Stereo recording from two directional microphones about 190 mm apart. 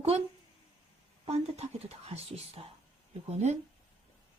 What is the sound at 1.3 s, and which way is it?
Speech, 35° right (ahead or behind).